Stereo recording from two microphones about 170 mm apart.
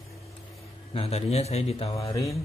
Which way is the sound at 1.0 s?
35° left (ahead or behind).